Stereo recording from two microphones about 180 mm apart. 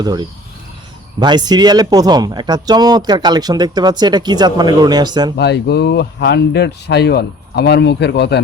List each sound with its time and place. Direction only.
0.0 s speech: 20° right (ahead or behind)
5.4 s speech: 65° left (ahead or behind)